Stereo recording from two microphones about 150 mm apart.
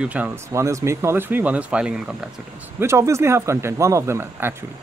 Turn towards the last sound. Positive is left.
turn(degrees=-15)  # may be behind; listen again after turning